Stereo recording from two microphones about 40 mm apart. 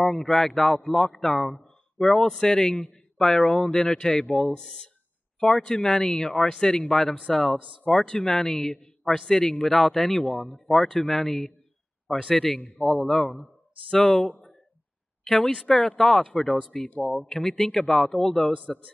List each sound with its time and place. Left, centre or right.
0.0 s a man's voice: centre
7.8 s a man's voice: left
13.8 s a man's voice: centre
16.0 s a man's voice: centre